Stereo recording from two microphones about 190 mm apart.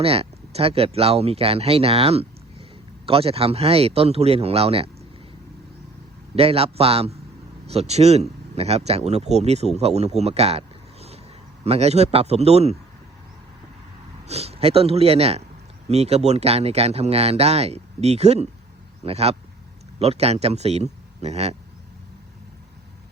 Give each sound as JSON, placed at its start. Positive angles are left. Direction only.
{"t": 0.0, "sound": "speech", "side_deg": -30}
{"t": 6.3, "sound": "speech", "side_deg": -30}
{"t": 11.6, "sound": "speech", "side_deg": -35}
{"t": 14.3, "sound": "speech", "side_deg": -35}